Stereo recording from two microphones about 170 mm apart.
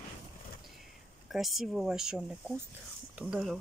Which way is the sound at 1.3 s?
Centre (ahead or behind).